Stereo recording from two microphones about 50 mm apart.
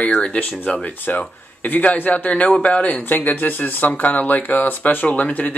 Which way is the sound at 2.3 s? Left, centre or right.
Left.